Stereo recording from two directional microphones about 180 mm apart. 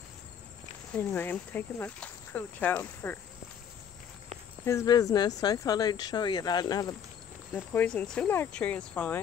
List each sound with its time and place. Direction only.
0.9 s speech: 10° left (ahead or behind)
4.6 s speech: 20° left (ahead or behind)
7.5 s speech: 10° left (ahead or behind)